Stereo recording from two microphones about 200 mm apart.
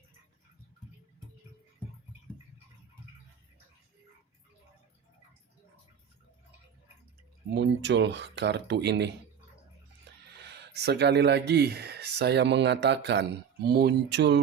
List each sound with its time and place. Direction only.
7.5 s speech: 60° right (ahead or behind)
10.4 s speech: 55° right (ahead or behind)